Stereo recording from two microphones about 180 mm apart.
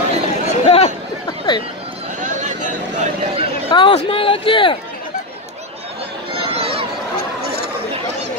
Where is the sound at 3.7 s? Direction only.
25° left (ahead or behind).